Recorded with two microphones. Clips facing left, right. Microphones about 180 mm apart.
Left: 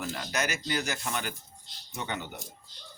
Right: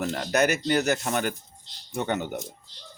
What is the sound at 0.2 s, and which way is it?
Speech, 55° right (ahead or behind).